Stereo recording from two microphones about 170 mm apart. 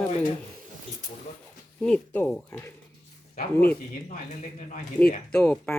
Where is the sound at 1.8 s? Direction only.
10° left (ahead or behind).